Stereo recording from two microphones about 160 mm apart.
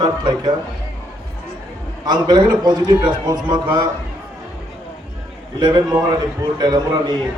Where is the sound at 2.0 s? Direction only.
25° right (ahead or behind).